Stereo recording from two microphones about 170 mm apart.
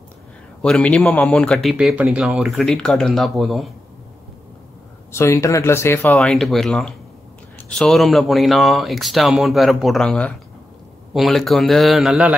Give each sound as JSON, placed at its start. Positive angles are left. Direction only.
{"t": 0.6, "sound": "speech", "side_deg": 5}
{"t": 5.1, "sound": "speech", "side_deg": 15}
{"t": 6.1, "sound": "speech", "side_deg": 0}